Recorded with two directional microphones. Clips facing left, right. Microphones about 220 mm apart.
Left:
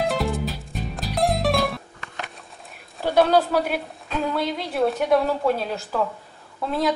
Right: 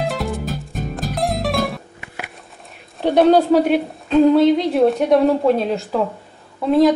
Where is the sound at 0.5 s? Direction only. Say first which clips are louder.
Right 5 dB; 50° right (ahead or behind).